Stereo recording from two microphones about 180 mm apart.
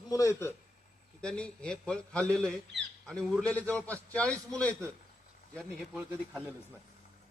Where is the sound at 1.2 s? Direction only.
5° left (ahead or behind).